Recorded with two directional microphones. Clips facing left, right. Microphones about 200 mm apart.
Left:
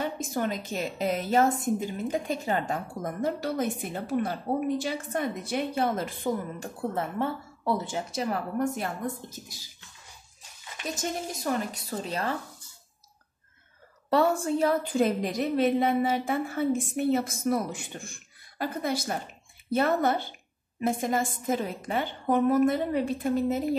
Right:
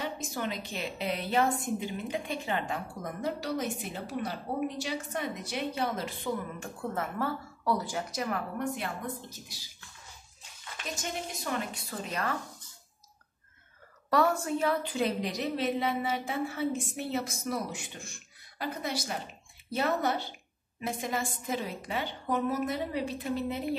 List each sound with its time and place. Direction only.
0.0 s speech: 50° left (ahead or behind); by 8.6 s 30° left (ahead or behind)
8.7 s speech: 45° left (ahead or behind)
11.0 s a woman's voice: 40° left (ahead or behind)
14.1 s speech: 30° left (ahead or behind)